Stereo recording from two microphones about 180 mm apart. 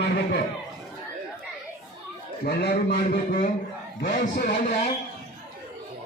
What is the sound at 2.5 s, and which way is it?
A man's voice, 65° left (ahead or behind).